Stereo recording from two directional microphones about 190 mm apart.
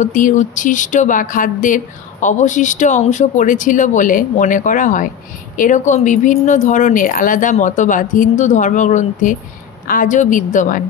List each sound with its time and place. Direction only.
0.0 s speech: 40° left (ahead or behind)